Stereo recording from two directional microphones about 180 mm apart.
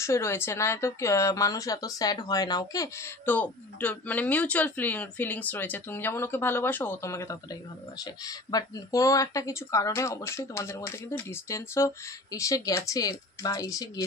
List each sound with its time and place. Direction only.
0.0 s speech: 15° left (ahead or behind)